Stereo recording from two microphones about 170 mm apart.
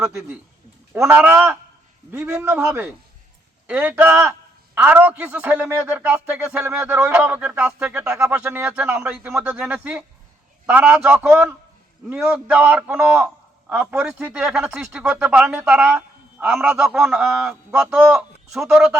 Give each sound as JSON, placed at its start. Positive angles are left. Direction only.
{"t": 0.0, "sound": "a man's voice", "side_deg": -15}